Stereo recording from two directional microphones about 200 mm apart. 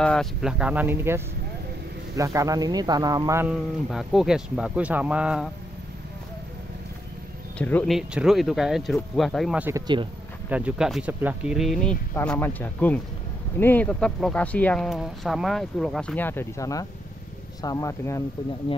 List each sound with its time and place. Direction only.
0.0 s speech: centre (ahead or behind); by 3.5 s 15° right (ahead or behind)
3.9 s speech: centre (ahead or behind)
7.5 s speech: 5° left (ahead or behind); by 10.0 s 20° right (ahead or behind)
10.5 s speech: 5° right (ahead or behind); by 18.2 s 15° left (ahead or behind)